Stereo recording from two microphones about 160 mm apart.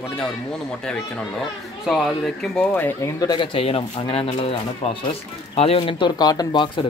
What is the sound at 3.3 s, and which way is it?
Speech, 35° left (ahead or behind).